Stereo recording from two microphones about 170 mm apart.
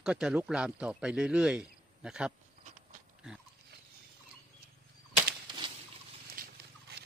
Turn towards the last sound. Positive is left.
turn(degrees=-65)  # may be behind; listen again after turning